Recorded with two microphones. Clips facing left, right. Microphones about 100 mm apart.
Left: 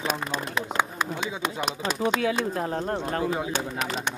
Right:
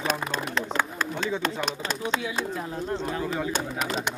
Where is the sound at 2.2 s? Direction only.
50° left (ahead or behind).